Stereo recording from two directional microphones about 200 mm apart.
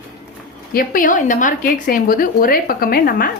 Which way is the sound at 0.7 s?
45° left (ahead or behind).